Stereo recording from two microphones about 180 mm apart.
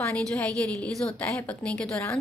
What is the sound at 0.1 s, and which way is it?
A woman's voice, 5° left (ahead or behind).